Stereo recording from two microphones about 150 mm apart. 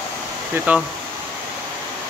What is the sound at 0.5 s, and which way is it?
Speech, 10° right (ahead or behind).